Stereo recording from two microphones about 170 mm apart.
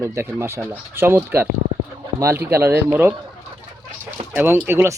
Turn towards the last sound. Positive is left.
turn(degrees=-15)  # may be behind; listen again after turning